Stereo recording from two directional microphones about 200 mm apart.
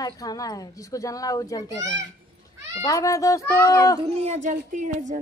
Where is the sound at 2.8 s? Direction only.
15° left (ahead or behind).